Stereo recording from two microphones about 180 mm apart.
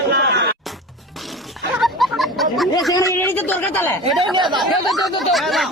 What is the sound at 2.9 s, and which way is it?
Speech, 15° left (ahead or behind).